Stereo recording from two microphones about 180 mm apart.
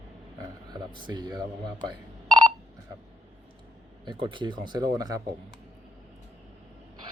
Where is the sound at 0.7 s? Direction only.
25° right (ahead or behind).